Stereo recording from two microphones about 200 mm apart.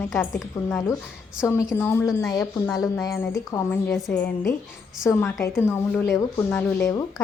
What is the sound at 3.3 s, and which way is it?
Speech, 15° left (ahead or behind).